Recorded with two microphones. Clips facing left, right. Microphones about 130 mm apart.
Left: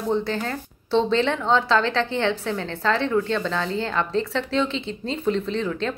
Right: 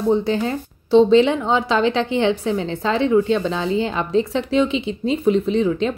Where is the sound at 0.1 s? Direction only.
15° right (ahead or behind).